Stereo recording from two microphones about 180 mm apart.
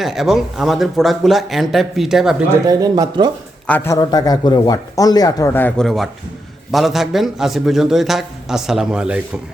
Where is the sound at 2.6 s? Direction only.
20° right (ahead or behind).